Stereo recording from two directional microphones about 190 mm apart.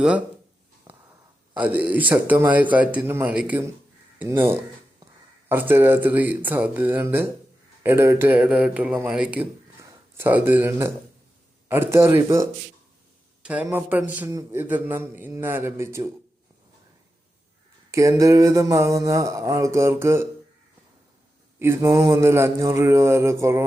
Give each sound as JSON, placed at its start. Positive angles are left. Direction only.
{"t": 1.5, "sound": "a man's voice", "side_deg": -10}
{"t": 5.5, "sound": "a man's voice", "side_deg": -10}
{"t": 17.9, "sound": "a man's voice", "side_deg": -15}
{"t": 21.6, "sound": "a man's voice", "side_deg": -15}